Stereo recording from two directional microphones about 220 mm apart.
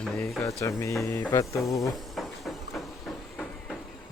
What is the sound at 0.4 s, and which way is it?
Speech, 5° left (ahead or behind).